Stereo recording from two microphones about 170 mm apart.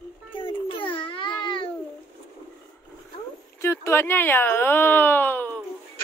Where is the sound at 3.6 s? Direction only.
15° left (ahead or behind).